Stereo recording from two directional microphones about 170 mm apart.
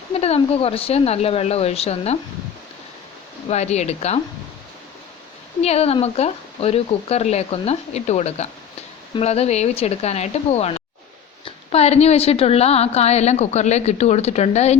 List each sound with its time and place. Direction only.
0.1 s a woman's voice: 35° left (ahead or behind)
3.5 s a woman's voice: 40° left (ahead or behind)
5.6 s a woman's voice: 35° left (ahead or behind)